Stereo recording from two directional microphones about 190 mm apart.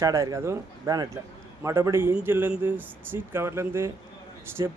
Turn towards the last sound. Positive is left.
turn(degrees=-15)  # may be behind; listen again after turning